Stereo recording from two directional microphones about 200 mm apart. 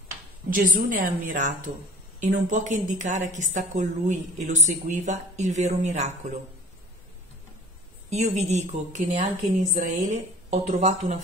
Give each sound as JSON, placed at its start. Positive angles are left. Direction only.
{"t": 0.5, "sound": "a woman's voice", "side_deg": -45}
{"t": 8.1, "sound": "a woman's voice", "side_deg": -35}